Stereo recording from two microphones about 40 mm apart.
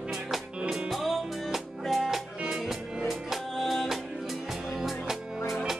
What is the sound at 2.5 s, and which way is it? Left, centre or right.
Music, centre.